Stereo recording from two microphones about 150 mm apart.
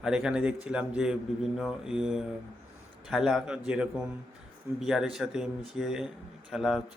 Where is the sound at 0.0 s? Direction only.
5° right (ahead or behind).